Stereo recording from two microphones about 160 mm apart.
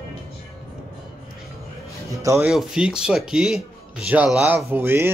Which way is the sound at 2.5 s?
5° right (ahead or behind).